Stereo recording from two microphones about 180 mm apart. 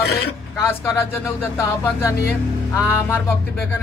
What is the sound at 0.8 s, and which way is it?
Speech, 15° left (ahead or behind).